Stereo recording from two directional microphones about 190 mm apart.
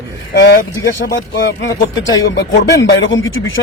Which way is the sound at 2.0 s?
75° left (ahead or behind).